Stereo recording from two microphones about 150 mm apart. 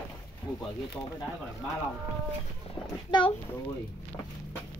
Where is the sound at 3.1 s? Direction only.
30° left (ahead or behind).